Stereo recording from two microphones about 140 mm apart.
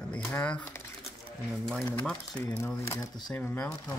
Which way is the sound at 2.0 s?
5° left (ahead or behind).